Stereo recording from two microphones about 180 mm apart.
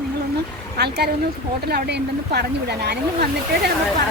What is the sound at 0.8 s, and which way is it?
Speech, 65° right (ahead or behind).